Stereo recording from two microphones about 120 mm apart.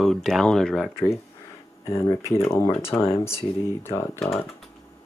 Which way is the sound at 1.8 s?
20° left (ahead or behind).